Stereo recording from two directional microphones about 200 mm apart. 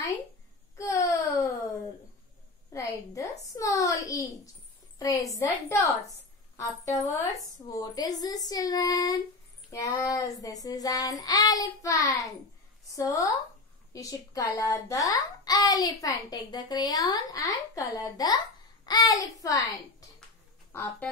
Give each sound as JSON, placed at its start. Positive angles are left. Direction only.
{"t": 0.7, "sound": "wail", "side_deg": 15}
{"t": 2.7, "sound": "a woman's voice", "side_deg": 15}
{"t": 3.5, "sound": "child singing", "side_deg": 15}
{"t": 7.6, "sound": "a child's voice", "side_deg": 20}
{"t": 9.7, "sound": "child singing", "side_deg": 15}
{"t": 13.9, "sound": "a child's voice", "side_deg": 15}
{"t": 18.9, "sound": "child singing", "side_deg": 20}